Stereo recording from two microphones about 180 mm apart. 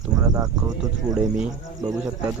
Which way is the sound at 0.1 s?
5° right (ahead or behind).